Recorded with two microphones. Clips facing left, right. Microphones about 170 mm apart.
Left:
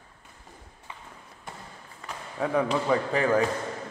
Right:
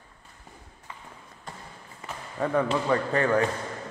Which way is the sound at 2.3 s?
Centre (ahead or behind).